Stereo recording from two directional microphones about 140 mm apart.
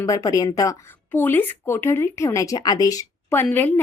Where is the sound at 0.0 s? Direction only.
25° left (ahead or behind).